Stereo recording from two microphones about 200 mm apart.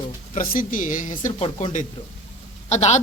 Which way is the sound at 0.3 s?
45° left (ahead or behind).